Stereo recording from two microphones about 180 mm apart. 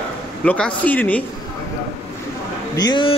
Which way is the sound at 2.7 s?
25° left (ahead or behind).